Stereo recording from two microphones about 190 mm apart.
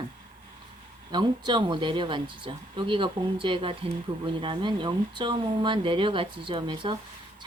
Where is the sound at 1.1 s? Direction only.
25° right (ahead or behind).